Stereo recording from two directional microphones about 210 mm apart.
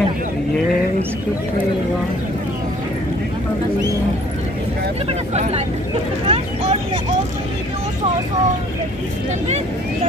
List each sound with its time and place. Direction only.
5.3 s speech: 30° right (ahead or behind)
6.2 s vehicle: 30° right (ahead or behind)